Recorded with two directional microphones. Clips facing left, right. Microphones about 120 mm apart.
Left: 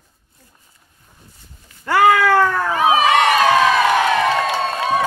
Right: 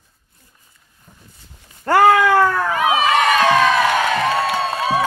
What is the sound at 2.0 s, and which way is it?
Cat, 20° right (ahead or behind).